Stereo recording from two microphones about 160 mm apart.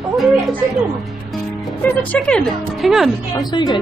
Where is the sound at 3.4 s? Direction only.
25° left (ahead or behind).